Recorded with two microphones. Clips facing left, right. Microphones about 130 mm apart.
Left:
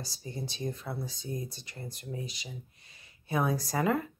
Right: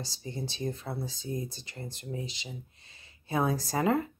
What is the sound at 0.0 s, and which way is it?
Speech, 25° right (ahead or behind).